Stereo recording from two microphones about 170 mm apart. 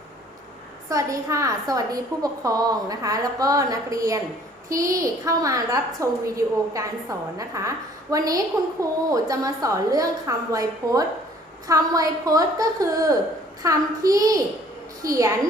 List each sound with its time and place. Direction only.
0.9 s a woman's voice: 20° right (ahead or behind)